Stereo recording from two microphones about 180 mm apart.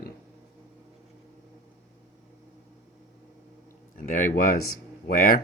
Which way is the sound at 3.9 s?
50° left (ahead or behind).